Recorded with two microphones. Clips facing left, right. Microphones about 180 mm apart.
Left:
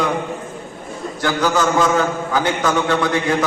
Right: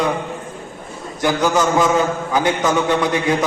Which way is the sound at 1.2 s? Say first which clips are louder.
Right 1 dB; 20° right (ahead or behind).